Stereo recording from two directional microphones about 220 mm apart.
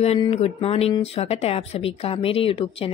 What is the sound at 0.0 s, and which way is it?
Speech, 25° left (ahead or behind).